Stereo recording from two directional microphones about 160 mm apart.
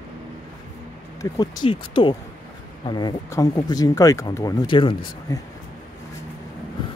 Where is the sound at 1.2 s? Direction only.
25° left (ahead or behind).